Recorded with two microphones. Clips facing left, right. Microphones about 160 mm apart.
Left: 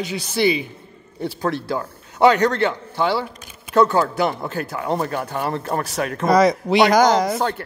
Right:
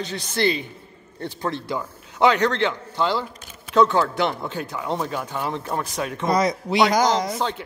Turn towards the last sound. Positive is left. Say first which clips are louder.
# left 5 dB
turn(degrees=65)  # may be behind; listen again after turning